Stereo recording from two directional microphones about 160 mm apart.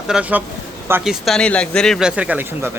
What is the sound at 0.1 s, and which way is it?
Speech, 10° right (ahead or behind).